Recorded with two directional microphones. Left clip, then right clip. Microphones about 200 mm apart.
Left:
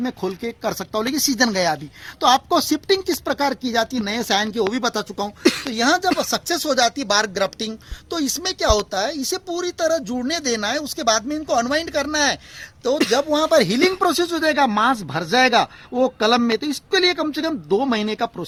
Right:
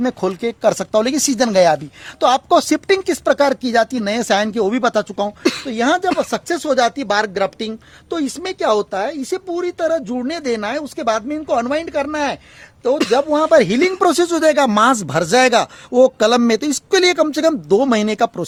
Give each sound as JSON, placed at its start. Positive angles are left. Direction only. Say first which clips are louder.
{"t": 0.0, "sound": "speech", "louder": "right 6 dB", "side_deg": -50}
{"t": 5.4, "sound": "speech", "louder": "left 4 dB", "side_deg": 10}
{"t": 5.7, "sound": "speech", "louder": "right 5 dB", "side_deg": -50}
{"t": 13.1, "sound": "speech", "louder": "right 5 dB", "side_deg": -45}